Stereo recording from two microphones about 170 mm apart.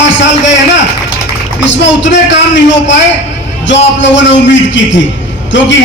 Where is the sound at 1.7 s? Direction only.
90° left.